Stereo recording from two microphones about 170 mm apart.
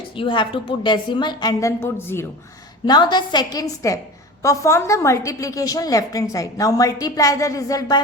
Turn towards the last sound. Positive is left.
turn(degrees=20)  # may be behind; listen again after turning